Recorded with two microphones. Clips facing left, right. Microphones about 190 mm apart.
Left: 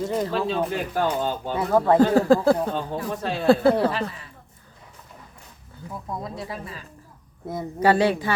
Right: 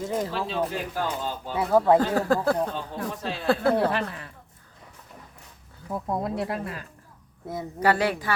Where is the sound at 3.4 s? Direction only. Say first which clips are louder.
Left 6 dB; 30° left (ahead or behind).